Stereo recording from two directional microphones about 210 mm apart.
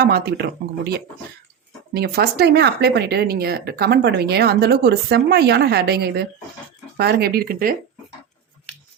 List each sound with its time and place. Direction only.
0.0 s speech: 50° right (ahead or behind)